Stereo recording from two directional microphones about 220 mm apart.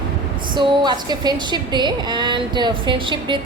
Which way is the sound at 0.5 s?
20° right (ahead or behind).